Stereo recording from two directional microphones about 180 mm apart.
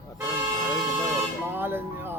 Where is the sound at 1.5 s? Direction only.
10° right (ahead or behind).